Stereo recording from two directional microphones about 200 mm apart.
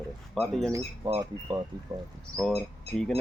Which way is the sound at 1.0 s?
20° right (ahead or behind).